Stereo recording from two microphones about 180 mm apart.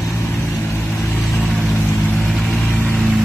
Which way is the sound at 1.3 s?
Centre (ahead or behind).